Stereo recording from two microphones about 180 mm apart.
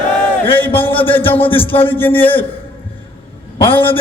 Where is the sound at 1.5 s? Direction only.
30° left (ahead or behind).